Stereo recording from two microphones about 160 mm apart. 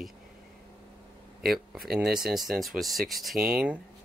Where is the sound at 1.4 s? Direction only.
Centre (ahead or behind).